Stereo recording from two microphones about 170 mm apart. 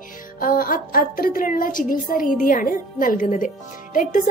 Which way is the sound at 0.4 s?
55° left (ahead or behind).